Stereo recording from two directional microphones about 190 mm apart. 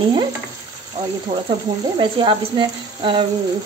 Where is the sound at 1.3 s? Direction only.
25° right (ahead or behind).